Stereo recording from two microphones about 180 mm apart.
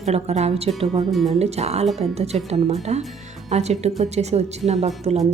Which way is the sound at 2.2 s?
35° right (ahead or behind).